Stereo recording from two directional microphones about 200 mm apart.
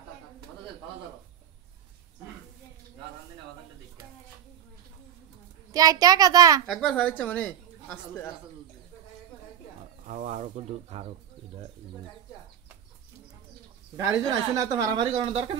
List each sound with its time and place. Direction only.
5.7 s a child's voice: 20° right (ahead or behind)
6.6 s a woman's voice: centre (ahead or behind)
10.0 s speech: 35° right (ahead or behind)
13.9 s speech: 15° right (ahead or behind)